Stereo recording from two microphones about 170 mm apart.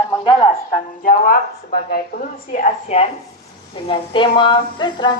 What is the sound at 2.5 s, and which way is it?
Speech, 45° left (ahead or behind).